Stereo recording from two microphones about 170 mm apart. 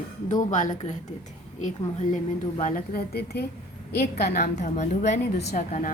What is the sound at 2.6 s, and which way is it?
A woman's voice, 65° left (ahead or behind).